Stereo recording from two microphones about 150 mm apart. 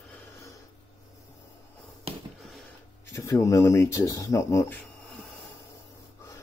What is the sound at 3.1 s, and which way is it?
Speech, 20° left (ahead or behind).